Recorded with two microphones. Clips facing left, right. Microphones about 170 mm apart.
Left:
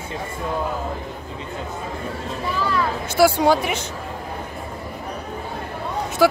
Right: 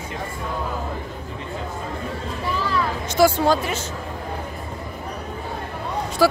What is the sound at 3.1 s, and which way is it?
Speech, 10° left (ahead or behind).